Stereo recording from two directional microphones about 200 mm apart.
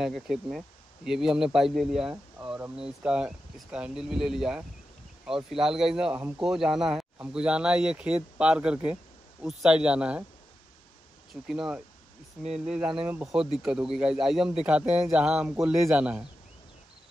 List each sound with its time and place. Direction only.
0.0 s a man's voice: centre (ahead or behind)
11.4 s a man's voice: 5° right (ahead or behind)